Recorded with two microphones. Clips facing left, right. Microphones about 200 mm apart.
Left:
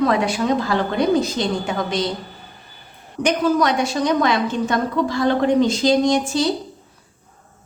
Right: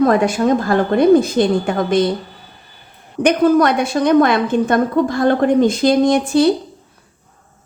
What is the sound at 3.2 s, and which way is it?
A woman's voice, 55° right (ahead or behind).